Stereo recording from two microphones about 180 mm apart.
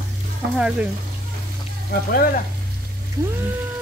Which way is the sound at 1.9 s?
55° left (ahead or behind).